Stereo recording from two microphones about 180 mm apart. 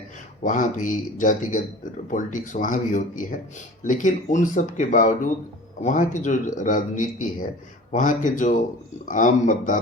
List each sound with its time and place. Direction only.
0.4 s speech: 45° left (ahead or behind)